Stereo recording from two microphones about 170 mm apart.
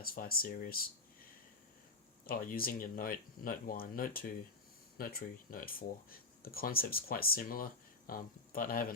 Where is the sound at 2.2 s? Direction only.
60° left (ahead or behind).